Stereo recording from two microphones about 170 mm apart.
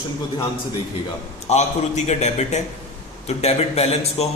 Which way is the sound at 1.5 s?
40° left (ahead or behind).